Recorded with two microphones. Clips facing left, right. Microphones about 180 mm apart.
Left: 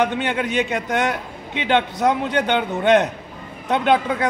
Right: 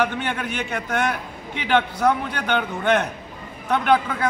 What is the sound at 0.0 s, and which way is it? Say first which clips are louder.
A man's voice: left 3 dB; 20° left (ahead or behind).